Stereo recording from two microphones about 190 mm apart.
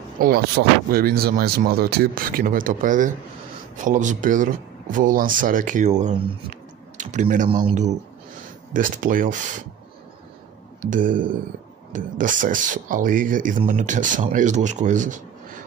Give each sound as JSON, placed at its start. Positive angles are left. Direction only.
{"t": 0.2, "sound": "speech", "side_deg": -55}
{"t": 10.8, "sound": "speech", "side_deg": -45}